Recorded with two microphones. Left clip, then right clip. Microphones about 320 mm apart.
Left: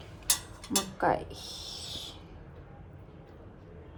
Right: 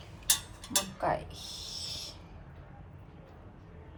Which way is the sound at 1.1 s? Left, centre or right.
Centre.